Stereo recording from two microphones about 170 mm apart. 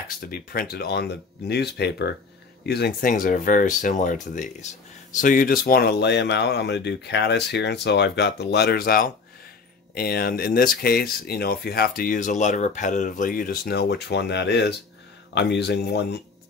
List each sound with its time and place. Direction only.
0.3 s speech: 65° left (ahead or behind); by 16.2 s 80° left